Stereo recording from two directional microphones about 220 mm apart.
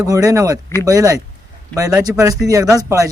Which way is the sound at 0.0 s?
15° right (ahead or behind).